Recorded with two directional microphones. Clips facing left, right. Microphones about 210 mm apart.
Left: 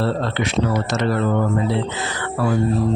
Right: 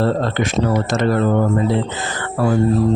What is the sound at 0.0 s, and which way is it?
Speech, 45° right (ahead or behind).